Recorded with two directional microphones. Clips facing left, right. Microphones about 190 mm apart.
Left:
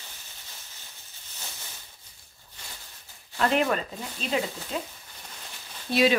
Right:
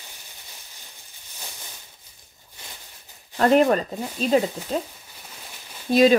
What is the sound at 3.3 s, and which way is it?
Speech, 40° right (ahead or behind).